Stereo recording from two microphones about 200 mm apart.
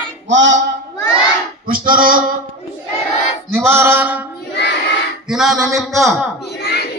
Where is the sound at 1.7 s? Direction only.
45° right (ahead or behind).